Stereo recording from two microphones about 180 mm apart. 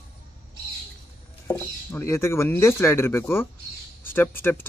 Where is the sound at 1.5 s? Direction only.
15° left (ahead or behind).